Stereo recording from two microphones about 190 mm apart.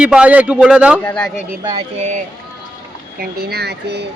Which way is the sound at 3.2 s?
55° right (ahead or behind).